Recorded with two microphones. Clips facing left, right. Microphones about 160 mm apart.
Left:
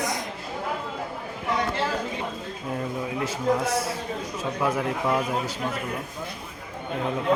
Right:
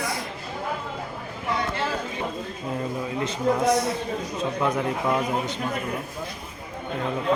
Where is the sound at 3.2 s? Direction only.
5° left (ahead or behind).